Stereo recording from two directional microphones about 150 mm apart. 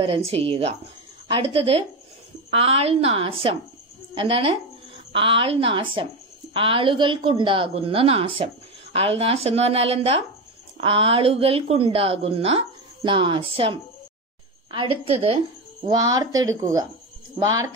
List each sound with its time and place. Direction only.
0.0 s a woman's voice: 40° right (ahead or behind)
15.9 s speech: 25° right (ahead or behind)